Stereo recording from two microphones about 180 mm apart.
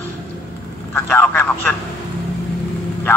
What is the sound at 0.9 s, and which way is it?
Speech, 10° left (ahead or behind).